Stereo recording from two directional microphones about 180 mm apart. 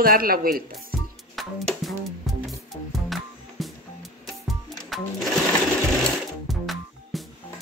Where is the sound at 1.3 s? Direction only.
Centre (ahead or behind).